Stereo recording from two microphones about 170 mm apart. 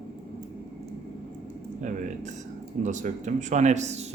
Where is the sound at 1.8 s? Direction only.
45° right (ahead or behind).